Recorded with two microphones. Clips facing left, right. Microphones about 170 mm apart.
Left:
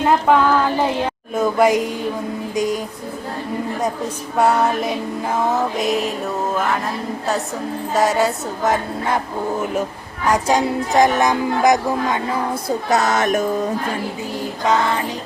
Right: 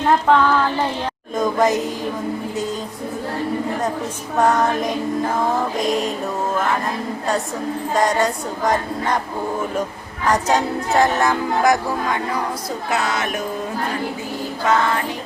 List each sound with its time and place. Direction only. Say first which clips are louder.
0.0 s child singing: left 1 dB; 10° left (ahead or behind)
1.4 s music: left 2 dB; 10° left (ahead or behind)
4.4 s music: left 1 dB; 10° left (ahead or behind)
5.7 s a sound: even; 5° left (ahead or behind)
7.9 s a sound: left 2 dB; 5° left (ahead or behind)
10.2 s music: left 1 dB; 10° left (ahead or behind)
12.9 s music: left 5 dB; 45° left (ahead or behind)